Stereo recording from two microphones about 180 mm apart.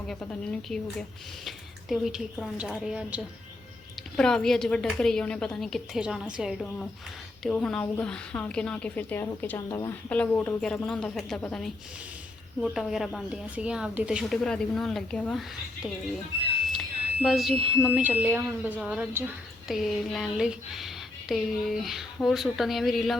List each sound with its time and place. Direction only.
0.1 s speech: 5° left (ahead or behind)
4.2 s a woman's voice: 5° left (ahead or behind)
17.2 s speech: centre (ahead or behind)
18.7 s speech: 5° left (ahead or behind)
19.2 s speech: 15° right (ahead or behind)
19.6 s speech: centre (ahead or behind)